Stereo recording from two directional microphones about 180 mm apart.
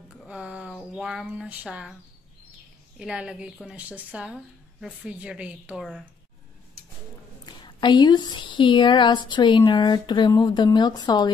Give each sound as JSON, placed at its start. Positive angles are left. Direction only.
{"t": 0.2, "sound": "speech", "side_deg": -5}
{"t": 3.0, "sound": "a woman's voice", "side_deg": -5}
{"t": 7.4, "sound": "a woman's voice", "side_deg": 25}